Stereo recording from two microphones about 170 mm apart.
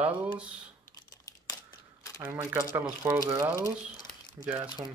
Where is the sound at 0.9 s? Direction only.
20° left (ahead or behind).